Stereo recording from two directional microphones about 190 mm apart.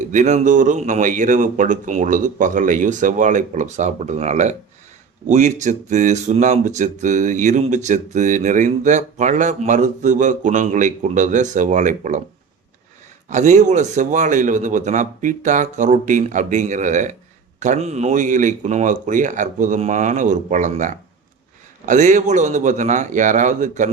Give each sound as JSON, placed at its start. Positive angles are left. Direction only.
{"t": 0.1, "sound": "speech", "side_deg": -40}
{"t": 13.3, "sound": "speech", "side_deg": -40}